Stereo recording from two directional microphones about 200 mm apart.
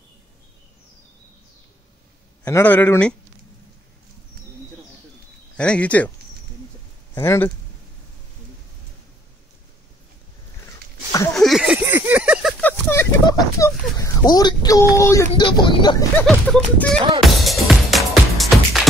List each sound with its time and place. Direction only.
2.4 s a man's voice: 10° left (ahead or behind)
5.6 s a man's voice: 5° left (ahead or behind)
7.2 s a man's voice: 15° left (ahead or behind)
11.3 s a sound: centre (ahead or behind)
13.3 s speech: 15° left (ahead or behind)
16.2 s speech: 5° left (ahead or behind)
17.2 s music: centre (ahead or behind)